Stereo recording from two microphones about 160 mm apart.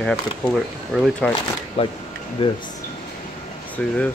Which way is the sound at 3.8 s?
10° left (ahead or behind).